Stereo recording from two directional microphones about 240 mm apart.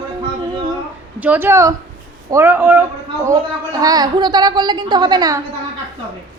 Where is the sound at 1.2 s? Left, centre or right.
Centre.